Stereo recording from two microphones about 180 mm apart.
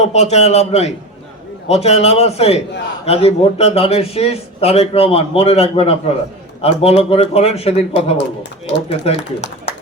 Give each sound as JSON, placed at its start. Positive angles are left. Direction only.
{"t": 0.0, "sound": "a man's voice", "side_deg": 35}